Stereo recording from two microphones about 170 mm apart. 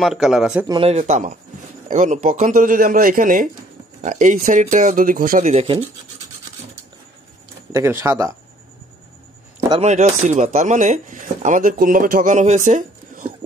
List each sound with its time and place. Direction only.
0.0 s a man's voice: centre (ahead or behind)
0.7 s speech: 35° right (ahead or behind)
7.7 s speech: 15° right (ahead or behind)
9.7 s speech: 40° right (ahead or behind)